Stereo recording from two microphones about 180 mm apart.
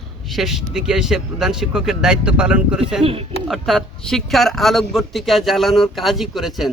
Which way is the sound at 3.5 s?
Centre (ahead or behind).